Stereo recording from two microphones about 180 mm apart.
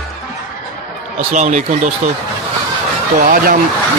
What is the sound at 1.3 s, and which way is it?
Speech, 40° right (ahead or behind).